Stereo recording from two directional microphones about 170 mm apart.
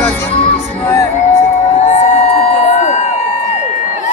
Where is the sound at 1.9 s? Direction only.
45° left (ahead or behind).